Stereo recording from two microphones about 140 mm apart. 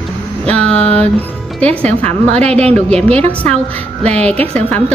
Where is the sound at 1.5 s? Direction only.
10° left (ahead or behind).